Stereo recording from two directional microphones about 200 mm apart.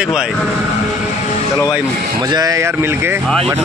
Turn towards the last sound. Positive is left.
turn(degrees=-15)  # may be behind; listen again after turning